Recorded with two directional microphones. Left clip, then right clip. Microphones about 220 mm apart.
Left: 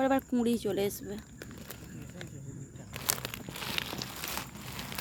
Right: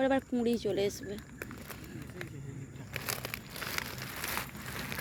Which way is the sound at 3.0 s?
15° left (ahead or behind).